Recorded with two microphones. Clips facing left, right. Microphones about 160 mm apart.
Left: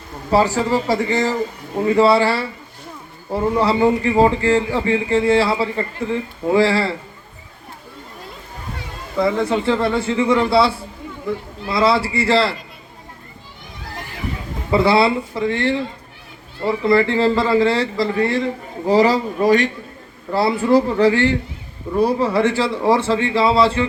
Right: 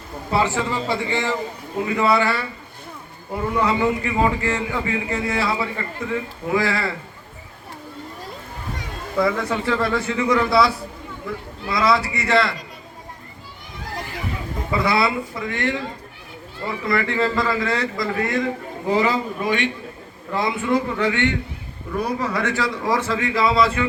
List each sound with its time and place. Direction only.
0.3 s a man's voice: 40° left (ahead or behind)
9.2 s a man's voice: 30° left (ahead or behind)
14.7 s a man's voice: 30° left (ahead or behind)